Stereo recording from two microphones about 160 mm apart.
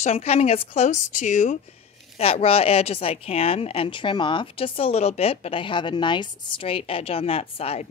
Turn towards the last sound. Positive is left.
turn(degrees=40)  # may be behind; listen again after turning